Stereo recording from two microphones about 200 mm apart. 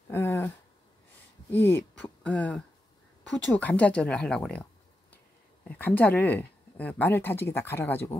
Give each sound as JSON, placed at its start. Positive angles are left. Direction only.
{"t": 0.1, "sound": "a sound", "side_deg": 10}
{"t": 1.5, "sound": "speech", "side_deg": 10}
{"t": 5.7, "sound": "speech", "side_deg": 10}